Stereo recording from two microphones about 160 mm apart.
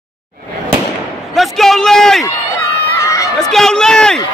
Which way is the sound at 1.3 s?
Centre (ahead or behind).